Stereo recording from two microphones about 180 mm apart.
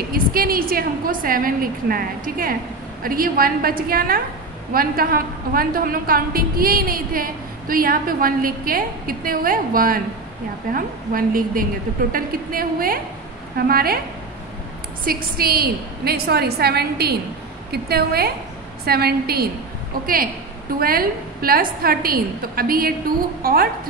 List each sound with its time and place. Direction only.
0.1 s a woman's voice: 55° right (ahead or behind)
15.0 s a woman's voice: 55° right (ahead or behind)
20.8 s a woman's voice: 55° right (ahead or behind)